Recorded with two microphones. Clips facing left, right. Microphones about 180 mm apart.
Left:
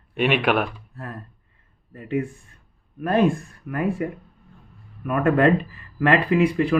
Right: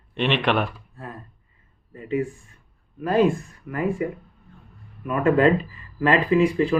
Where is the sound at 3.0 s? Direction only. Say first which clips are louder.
Even; 55° left (ahead or behind).